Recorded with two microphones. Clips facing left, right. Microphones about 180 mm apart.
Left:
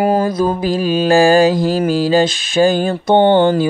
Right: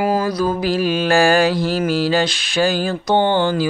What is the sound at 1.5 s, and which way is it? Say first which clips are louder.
Mantra: left 4 dB; 45° left (ahead or behind).